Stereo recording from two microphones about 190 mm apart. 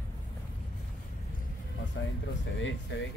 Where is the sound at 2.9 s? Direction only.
70° left (ahead or behind).